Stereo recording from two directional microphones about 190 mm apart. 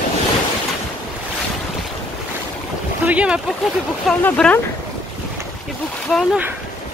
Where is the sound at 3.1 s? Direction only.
5° right (ahead or behind).